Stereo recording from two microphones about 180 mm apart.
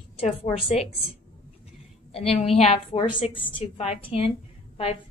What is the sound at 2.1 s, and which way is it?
A woman's voice, 35° left (ahead or behind).